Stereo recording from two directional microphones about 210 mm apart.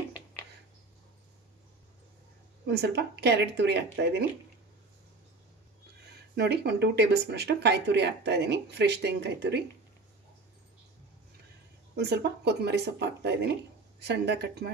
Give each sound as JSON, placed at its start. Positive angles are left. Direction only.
{"t": 2.6, "sound": "speech", "side_deg": -50}
{"t": 6.3, "sound": "speech", "side_deg": -50}
{"t": 11.9, "sound": "speech", "side_deg": -50}